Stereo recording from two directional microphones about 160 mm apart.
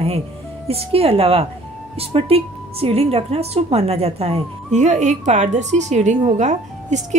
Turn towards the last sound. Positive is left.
turn(degrees=-45)  # may be behind; listen again after turning